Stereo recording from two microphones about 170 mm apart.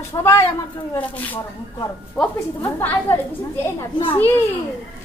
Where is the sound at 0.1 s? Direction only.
20° left (ahead or behind).